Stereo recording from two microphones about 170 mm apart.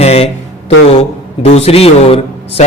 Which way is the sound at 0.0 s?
35° left (ahead or behind).